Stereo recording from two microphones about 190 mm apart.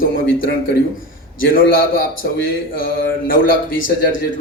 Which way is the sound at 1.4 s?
50° left (ahead or behind).